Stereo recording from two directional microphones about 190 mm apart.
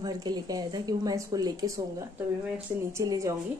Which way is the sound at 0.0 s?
20° right (ahead or behind).